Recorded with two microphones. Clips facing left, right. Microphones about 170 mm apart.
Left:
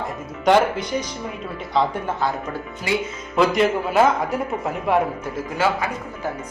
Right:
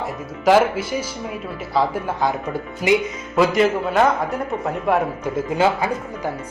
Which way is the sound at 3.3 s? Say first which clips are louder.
Right 1 dB; centre (ahead or behind).